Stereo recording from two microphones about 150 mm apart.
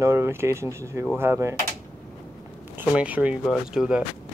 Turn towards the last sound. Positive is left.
turn(degrees=-5)  # may be behind; listen again after turning